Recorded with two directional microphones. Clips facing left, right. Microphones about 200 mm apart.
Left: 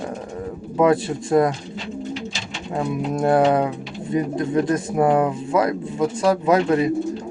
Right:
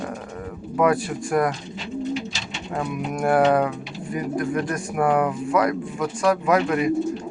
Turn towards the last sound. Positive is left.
turn(degrees=30)  # may be behind; listen again after turning